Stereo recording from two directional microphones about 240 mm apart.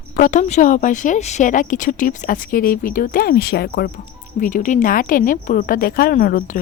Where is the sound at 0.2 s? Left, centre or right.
Left.